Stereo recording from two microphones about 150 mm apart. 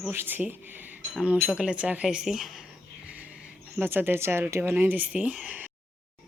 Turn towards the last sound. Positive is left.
turn(degrees=-10)  # may be behind; listen again after turning